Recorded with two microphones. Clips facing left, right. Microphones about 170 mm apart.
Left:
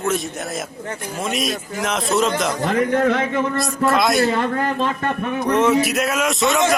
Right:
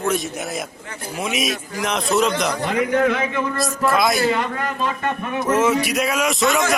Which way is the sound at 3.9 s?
Centre (ahead or behind).